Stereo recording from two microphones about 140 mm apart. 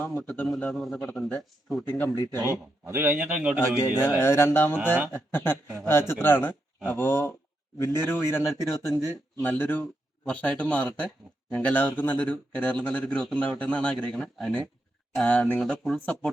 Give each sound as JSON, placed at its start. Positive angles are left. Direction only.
{"t": 0.0, "sound": "a man's voice", "side_deg": 5}
{"t": 2.5, "sound": "a man's voice", "side_deg": -15}
{"t": 4.2, "sound": "speech", "side_deg": 20}